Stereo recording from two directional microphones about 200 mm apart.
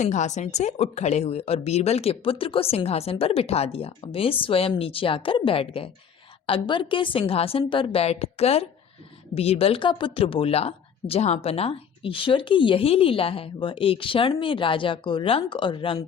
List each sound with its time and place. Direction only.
0.0 s speech: 35° left (ahead or behind)